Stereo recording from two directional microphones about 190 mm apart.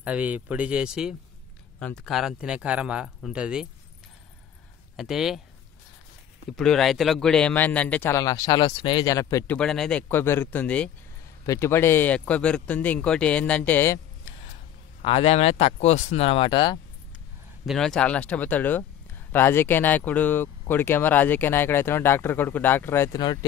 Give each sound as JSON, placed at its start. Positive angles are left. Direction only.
{"t": 0.0, "sound": "speech", "side_deg": -10}
{"t": 4.9, "sound": "speech", "side_deg": 0}
{"t": 6.5, "sound": "speech", "side_deg": 0}
{"t": 9.6, "sound": "speech", "side_deg": 5}
{"t": 15.0, "sound": "speech", "side_deg": 30}
{"t": 17.6, "sound": "speech", "side_deg": 5}